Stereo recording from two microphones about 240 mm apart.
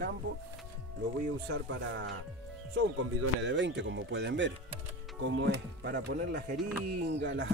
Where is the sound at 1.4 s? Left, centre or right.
Right.